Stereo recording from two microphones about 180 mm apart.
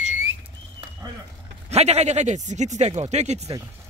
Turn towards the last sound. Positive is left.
turn(degrees=-40)  # may be behind; listen again after turning